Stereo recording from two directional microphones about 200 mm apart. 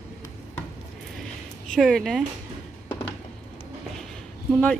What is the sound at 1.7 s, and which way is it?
Speech, centre (ahead or behind).